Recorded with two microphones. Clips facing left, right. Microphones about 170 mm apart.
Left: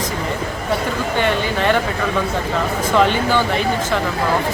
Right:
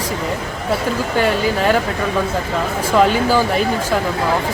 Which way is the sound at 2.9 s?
5° right (ahead or behind).